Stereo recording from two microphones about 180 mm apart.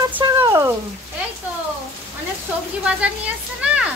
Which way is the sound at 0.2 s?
20° right (ahead or behind).